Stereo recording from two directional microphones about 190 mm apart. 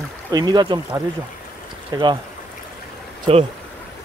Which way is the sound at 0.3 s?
20° right (ahead or behind).